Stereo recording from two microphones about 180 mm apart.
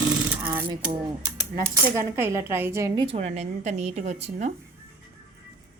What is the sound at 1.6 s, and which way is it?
Speech, 15° right (ahead or behind).